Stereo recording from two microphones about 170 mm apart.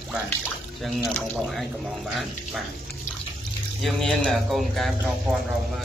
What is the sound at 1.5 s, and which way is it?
Speech, centre (ahead or behind).